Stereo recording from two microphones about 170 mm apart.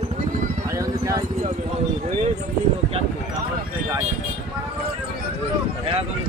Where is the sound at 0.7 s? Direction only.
20° right (ahead or behind).